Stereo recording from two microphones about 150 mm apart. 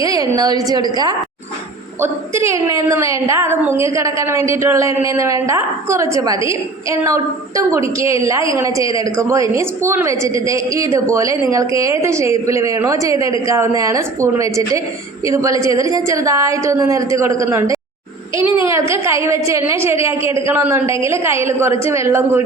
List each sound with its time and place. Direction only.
0.0 s a woman's voice: 25° right (ahead or behind)